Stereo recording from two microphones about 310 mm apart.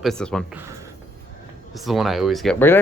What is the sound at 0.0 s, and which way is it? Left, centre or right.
Speech, centre.